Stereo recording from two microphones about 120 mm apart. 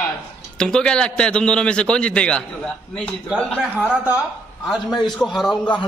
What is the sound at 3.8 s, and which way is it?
Speech, 15° right (ahead or behind).